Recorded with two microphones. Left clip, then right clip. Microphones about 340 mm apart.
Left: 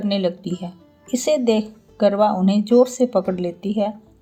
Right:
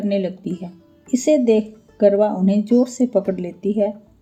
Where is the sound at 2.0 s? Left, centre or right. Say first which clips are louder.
Right 1 dB; left.